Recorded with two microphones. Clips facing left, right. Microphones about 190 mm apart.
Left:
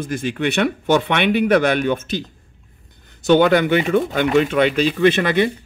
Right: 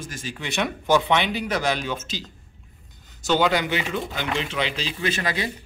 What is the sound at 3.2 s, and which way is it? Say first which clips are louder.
Speech: left 8 dB; 55° left (ahead or behind).